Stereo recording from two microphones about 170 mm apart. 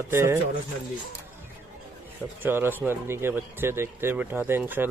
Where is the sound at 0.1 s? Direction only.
15° right (ahead or behind).